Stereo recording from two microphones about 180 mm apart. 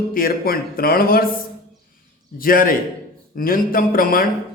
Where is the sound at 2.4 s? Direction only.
50° left (ahead or behind).